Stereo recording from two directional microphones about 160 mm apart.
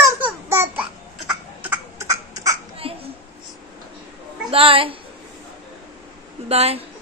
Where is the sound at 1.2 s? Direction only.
10° right (ahead or behind).